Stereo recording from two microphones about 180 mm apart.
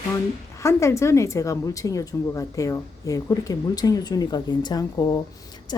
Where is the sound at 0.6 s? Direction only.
15° left (ahead or behind).